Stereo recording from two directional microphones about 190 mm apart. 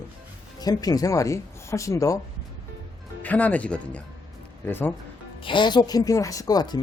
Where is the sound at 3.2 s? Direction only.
10° left (ahead or behind).